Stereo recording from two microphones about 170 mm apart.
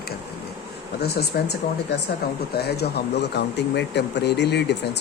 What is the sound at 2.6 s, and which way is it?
Speech, 70° left (ahead or behind).